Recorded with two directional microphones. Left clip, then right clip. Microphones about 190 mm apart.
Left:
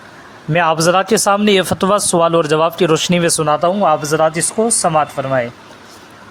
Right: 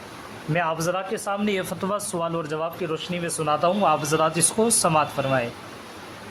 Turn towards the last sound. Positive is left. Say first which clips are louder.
# left 7 dB
turn(degrees=25)  # may be behind; listen again after turning